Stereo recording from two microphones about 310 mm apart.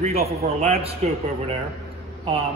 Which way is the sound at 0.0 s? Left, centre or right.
Centre.